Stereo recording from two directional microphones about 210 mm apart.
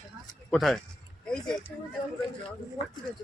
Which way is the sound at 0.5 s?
Centre (ahead or behind).